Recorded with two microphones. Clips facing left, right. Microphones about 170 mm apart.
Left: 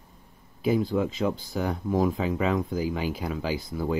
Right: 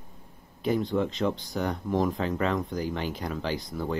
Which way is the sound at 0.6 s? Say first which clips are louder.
Left 2 dB; 5° left (ahead or behind).